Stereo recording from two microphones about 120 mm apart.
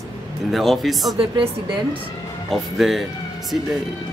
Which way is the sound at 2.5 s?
Centre (ahead or behind).